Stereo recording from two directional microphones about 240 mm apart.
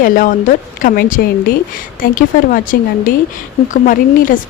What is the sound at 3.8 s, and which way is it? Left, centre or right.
Speech, left.